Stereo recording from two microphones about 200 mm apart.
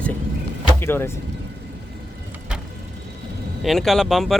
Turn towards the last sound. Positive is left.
turn(degrees=0)  # may be behind; listen again after turning